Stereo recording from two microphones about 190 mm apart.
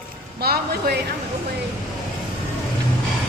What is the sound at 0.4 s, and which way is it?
Speech, 55° right (ahead or behind).